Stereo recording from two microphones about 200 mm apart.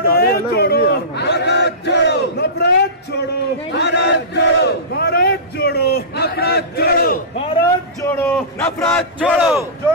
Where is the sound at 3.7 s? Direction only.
60° left (ahead or behind).